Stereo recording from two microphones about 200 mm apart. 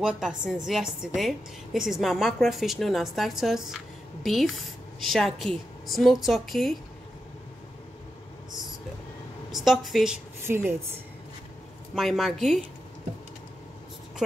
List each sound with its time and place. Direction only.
0.0 s a woman's voice: 5° right (ahead or behind)
9.5 s a woman's voice: centre (ahead or behind)
10.4 s speech: 10° right (ahead or behind)
11.9 s a woman's voice: centre (ahead or behind)